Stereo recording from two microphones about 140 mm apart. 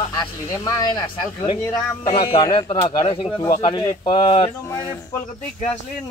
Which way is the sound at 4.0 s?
45° left (ahead or behind).